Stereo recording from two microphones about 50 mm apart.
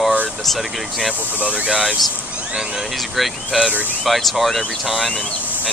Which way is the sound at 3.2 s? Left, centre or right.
Centre.